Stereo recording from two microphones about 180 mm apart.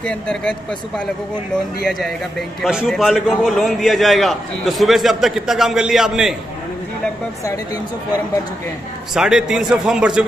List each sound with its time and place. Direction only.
0.0 s a man's voice: 5° left (ahead or behind)
7.4 s speech: 20° left (ahead or behind)
9.1 s a man's voice: 5° right (ahead or behind)